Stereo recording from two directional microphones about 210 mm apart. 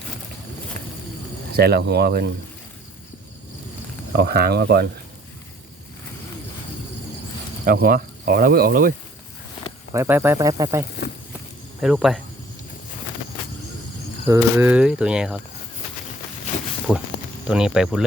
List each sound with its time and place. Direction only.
1.5 s speech: 50° right (ahead or behind)
4.1 s speech: 50° right (ahead or behind)
7.6 s speech: 40° right (ahead or behind)
9.9 s speech: 10° right (ahead or behind)
11.8 s speech: centre (ahead or behind)
14.3 s speech: 10° right (ahead or behind)
16.9 s speech: 5° right (ahead or behind)